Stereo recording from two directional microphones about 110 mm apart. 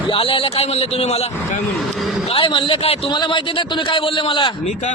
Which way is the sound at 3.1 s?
45° left (ahead or behind).